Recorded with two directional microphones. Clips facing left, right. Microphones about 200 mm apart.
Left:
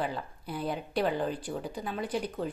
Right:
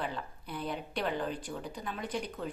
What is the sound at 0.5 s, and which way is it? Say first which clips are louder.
Speech: left 5 dB; 35° left (ahead or behind).